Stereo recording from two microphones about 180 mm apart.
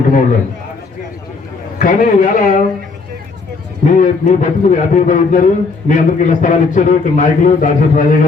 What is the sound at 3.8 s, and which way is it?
A man's voice, 45° left (ahead or behind).